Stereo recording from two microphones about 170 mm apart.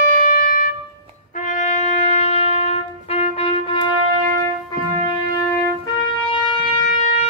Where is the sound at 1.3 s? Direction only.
45° left (ahead or behind); by 3.9 s 30° left (ahead or behind).